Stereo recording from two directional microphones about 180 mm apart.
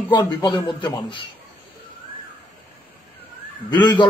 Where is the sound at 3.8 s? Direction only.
25° left (ahead or behind).